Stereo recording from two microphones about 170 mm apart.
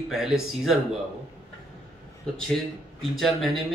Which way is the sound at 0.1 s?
Centre (ahead or behind).